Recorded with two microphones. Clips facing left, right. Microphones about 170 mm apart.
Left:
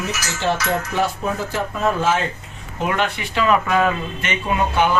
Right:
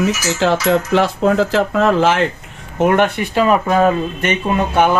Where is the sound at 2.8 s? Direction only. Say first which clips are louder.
Right 8 dB; 55° right (ahead or behind).